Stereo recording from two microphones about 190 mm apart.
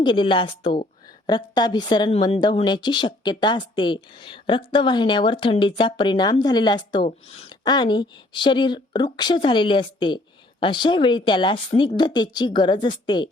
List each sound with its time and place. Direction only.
0.0 s a woman's voice: 25° left (ahead or behind)